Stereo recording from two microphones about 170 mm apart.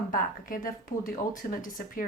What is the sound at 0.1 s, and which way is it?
Speech, 55° left (ahead or behind).